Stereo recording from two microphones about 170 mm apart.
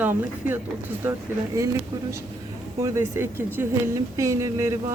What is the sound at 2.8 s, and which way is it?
Speech, 15° right (ahead or behind).